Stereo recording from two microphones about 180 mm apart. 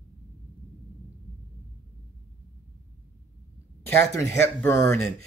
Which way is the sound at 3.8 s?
15° left (ahead or behind).